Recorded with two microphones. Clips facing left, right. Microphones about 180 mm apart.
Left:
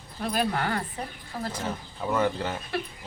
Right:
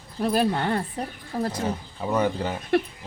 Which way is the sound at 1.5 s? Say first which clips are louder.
Right 5 dB; 15° right (ahead or behind).